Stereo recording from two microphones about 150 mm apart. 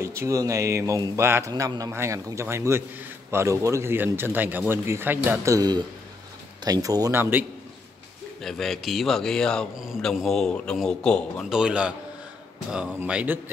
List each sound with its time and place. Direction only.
0.0 s speech: 20° right (ahead or behind)
8.4 s a man's voice: centre (ahead or behind)